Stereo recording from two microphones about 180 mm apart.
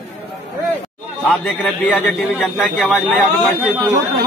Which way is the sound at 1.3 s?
5° left (ahead or behind).